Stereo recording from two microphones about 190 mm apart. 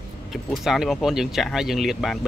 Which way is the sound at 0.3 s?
Centre (ahead or behind).